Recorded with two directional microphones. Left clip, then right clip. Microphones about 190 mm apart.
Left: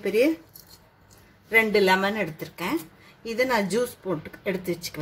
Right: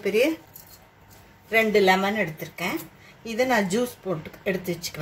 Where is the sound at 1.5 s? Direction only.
55° left (ahead or behind).